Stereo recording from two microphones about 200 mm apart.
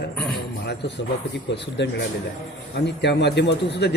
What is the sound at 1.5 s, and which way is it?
Speech, 60° left (ahead or behind).